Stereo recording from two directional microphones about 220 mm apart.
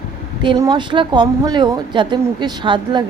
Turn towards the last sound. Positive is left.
turn(degrees=-20)  # may be behind; listen again after turning